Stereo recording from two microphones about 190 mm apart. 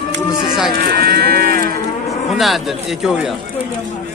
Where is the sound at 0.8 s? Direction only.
55° right (ahead or behind).